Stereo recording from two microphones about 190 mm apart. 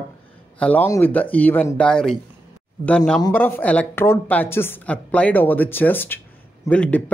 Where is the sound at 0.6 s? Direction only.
10° left (ahead or behind).